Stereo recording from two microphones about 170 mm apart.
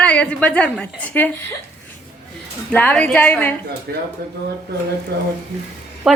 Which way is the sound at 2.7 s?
10° left (ahead or behind).